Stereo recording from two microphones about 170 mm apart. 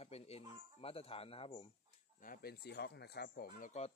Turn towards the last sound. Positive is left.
turn(degrees=65)  # may be behind; listen again after turning